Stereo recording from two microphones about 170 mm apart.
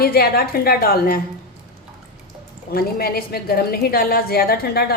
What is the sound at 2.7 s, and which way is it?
A woman's voice, 60° left (ahead or behind).